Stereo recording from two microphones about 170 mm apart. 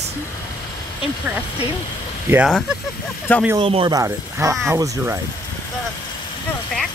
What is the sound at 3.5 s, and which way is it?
Speech, 30° right (ahead or behind).